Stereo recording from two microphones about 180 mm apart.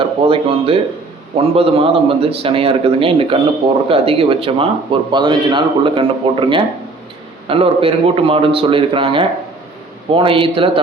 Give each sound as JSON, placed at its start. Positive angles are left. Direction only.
{"t": 0.0, "sound": "a man's voice", "side_deg": -30}